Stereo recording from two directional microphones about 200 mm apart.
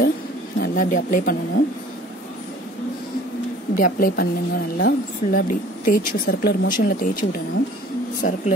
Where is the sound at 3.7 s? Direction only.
45° left (ahead or behind).